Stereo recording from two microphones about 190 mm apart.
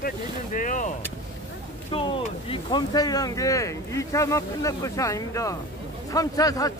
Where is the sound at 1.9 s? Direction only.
25° left (ahead or behind).